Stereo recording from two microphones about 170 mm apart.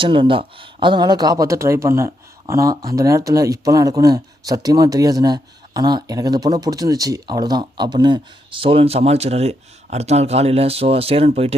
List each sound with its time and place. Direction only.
0.0 s speech: 30° right (ahead or behind)